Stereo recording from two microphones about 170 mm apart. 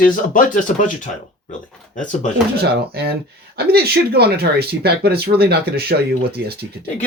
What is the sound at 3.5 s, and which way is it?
Speech, 70° right (ahead or behind).